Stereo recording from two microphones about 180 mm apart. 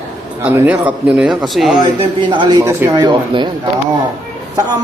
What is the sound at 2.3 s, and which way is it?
Speech, 25° right (ahead or behind).